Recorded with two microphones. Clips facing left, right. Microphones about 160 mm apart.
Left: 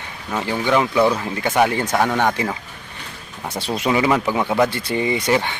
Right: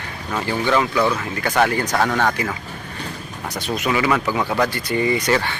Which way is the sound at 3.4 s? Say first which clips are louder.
Left 2 dB; 30° left (ahead or behind).